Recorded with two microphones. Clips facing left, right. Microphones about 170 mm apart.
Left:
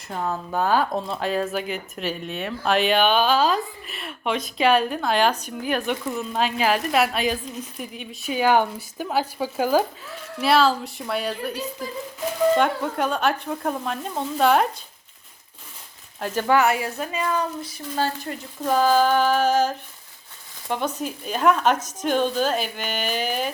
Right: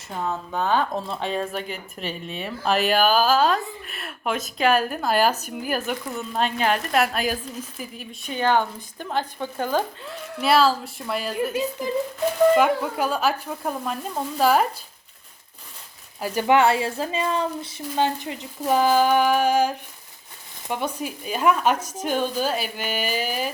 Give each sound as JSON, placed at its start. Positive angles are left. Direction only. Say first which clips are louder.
{"t": 0.2, "sound": "speech", "louder": "left 1 dB", "side_deg": 5}
{"t": 12.5, "sound": "speech", "louder": "right 2 dB", "side_deg": -5}
{"t": 16.2, "sound": "speech", "louder": "right 1 dB", "side_deg": -10}
{"t": 16.6, "sound": "speech", "louder": "right 2 dB", "side_deg": -25}